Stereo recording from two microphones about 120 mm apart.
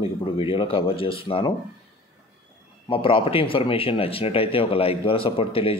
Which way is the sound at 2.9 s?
45° left (ahead or behind).